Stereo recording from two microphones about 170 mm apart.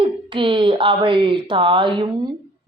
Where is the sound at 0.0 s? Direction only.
30° right (ahead or behind).